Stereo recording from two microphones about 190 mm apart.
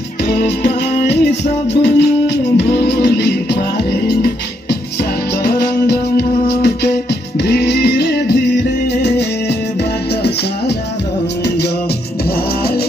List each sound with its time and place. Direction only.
0.3 s music: 60° left (ahead or behind)
5.4 s music: 55° left (ahead or behind)